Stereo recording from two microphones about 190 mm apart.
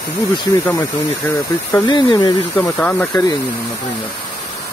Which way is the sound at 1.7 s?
25° left (ahead or behind).